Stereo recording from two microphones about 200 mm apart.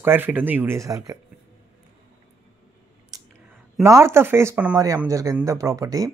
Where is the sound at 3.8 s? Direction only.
15° right (ahead or behind).